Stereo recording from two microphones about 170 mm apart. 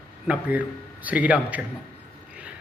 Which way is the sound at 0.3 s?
10° right (ahead or behind).